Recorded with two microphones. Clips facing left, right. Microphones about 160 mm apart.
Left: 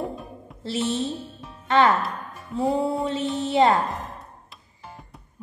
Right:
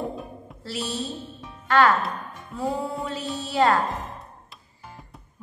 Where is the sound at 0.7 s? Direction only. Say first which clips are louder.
Left 5 dB; 25° left (ahead or behind).